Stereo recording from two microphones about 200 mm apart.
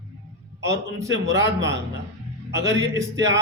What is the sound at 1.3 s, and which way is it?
Speech, 65° right (ahead or behind).